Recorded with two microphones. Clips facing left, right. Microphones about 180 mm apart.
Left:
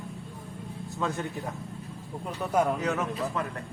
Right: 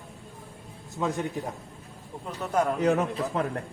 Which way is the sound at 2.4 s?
10° left (ahead or behind).